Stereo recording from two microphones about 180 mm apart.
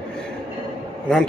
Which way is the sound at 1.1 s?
5° left (ahead or behind).